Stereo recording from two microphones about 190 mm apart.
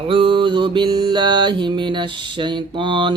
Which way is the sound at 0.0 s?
30° right (ahead or behind).